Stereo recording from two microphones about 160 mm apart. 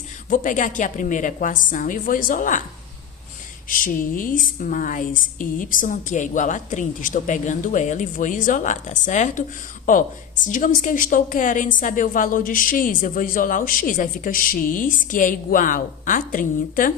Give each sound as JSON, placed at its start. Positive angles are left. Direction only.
{"t": 0.3, "sound": "a woman's voice", "side_deg": 55}
{"t": 3.7, "sound": "a woman's voice", "side_deg": 60}